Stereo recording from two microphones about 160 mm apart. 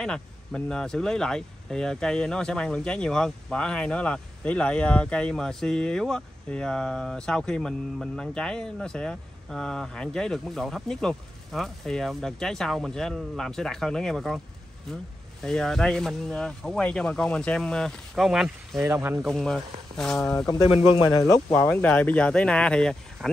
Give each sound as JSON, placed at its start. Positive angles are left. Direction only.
{"t": 0.0, "sound": "speech", "side_deg": 5}
{"t": 15.4, "sound": "speech", "side_deg": 5}
{"t": 18.8, "sound": "speech", "side_deg": -20}
{"t": 19.2, "sound": "speech", "side_deg": 5}
{"t": 20.5, "sound": "speech", "side_deg": 30}
{"t": 21.5, "sound": "speech", "side_deg": 10}